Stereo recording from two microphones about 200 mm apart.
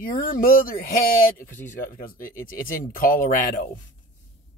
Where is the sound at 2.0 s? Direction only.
45° left (ahead or behind).